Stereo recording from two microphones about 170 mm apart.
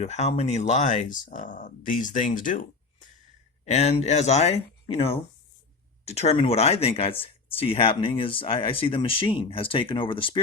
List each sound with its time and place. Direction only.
0.0 s speech: 40° left (ahead or behind)
3.7 s speech: 40° left (ahead or behind)